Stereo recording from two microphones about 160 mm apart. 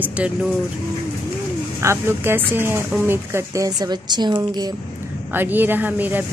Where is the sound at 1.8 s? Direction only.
15° right (ahead or behind).